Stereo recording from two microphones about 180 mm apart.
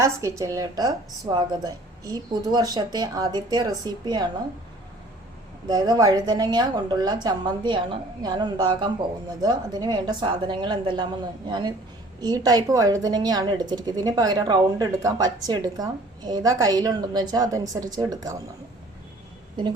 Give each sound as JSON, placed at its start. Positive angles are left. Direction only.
{"t": 0.0, "sound": "a woman's voice", "side_deg": -15}
{"t": 5.6, "sound": "a woman's voice", "side_deg": -25}